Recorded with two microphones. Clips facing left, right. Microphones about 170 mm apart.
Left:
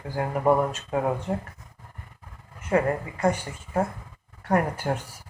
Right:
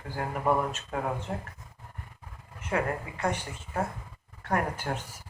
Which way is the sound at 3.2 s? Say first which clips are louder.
Left 7 dB; 10° left (ahead or behind).